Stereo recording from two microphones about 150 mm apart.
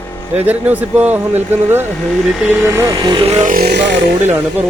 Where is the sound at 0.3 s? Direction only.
10° right (ahead or behind).